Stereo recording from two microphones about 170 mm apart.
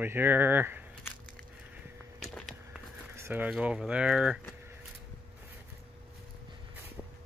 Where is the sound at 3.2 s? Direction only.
10° right (ahead or behind).